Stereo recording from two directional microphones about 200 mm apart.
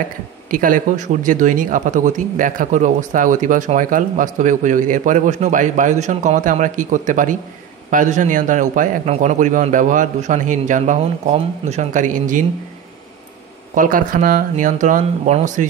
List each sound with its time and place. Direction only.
0.5 s speech: 45° right (ahead or behind)
13.7 s speech: 45° right (ahead or behind)